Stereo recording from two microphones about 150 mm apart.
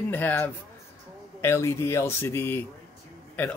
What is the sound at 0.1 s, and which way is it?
Speech, 15° left (ahead or behind).